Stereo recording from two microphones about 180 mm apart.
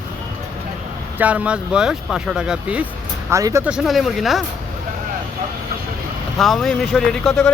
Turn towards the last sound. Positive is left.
turn(degrees=0)  # may be behind; listen again after turning